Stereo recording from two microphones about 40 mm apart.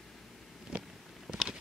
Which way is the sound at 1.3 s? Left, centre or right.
Centre.